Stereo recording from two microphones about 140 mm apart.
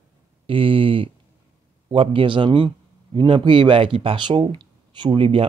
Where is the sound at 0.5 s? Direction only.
40° right (ahead or behind).